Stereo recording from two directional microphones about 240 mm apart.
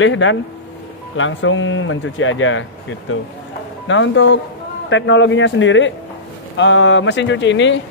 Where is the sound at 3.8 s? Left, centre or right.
Left.